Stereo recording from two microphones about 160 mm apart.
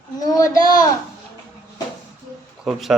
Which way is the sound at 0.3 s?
20° left (ahead or behind).